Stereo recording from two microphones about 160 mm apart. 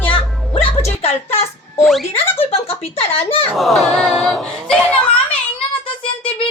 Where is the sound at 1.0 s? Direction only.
40° left (ahead or behind).